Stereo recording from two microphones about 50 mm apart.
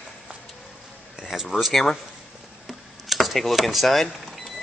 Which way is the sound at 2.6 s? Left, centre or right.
Centre.